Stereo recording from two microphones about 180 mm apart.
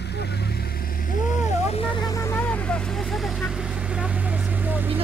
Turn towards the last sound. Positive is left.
turn(degrees=-10)  # may be behind; listen again after turning